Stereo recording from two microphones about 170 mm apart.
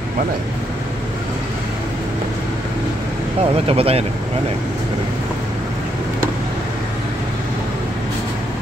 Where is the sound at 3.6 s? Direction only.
35° right (ahead or behind).